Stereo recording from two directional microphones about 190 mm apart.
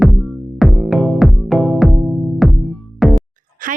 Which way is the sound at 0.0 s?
Centre (ahead or behind).